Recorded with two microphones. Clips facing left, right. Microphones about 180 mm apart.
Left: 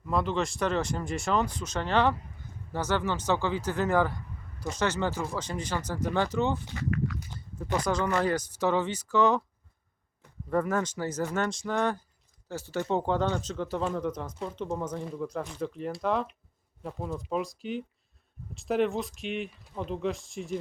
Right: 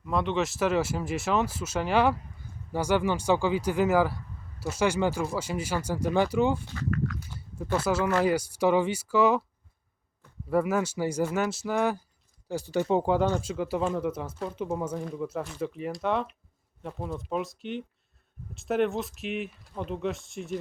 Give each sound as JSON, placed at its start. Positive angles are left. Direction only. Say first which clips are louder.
{"t": 0.0, "sound": "speech", "louder": "right 1 dB", "side_deg": 0}
{"t": 7.8, "sound": "speech", "louder": "right 2 dB", "side_deg": -5}
{"t": 10.5, "sound": "speech", "louder": "right 2 dB", "side_deg": -10}